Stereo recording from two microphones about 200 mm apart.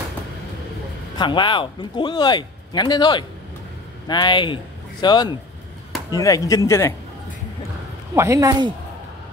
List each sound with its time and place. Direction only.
1.1 s a man's voice: 25° left (ahead or behind)
8.1 s speech: 15° right (ahead or behind)